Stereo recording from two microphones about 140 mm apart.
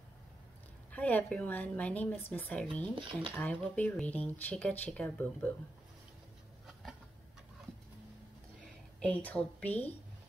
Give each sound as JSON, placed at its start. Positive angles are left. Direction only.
{"t": 0.9, "sound": "speech", "side_deg": 10}
{"t": 3.0, "sound": "speech", "side_deg": -35}
{"t": 3.3, "sound": "speech", "side_deg": 10}
{"t": 9.0, "sound": "speech", "side_deg": 10}